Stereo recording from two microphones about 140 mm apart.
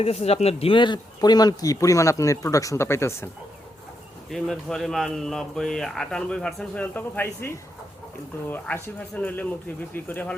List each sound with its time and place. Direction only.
0.0 s speech: 50° left (ahead or behind); by 3.2 s 20° left (ahead or behind)
4.3 s speech: centre (ahead or behind)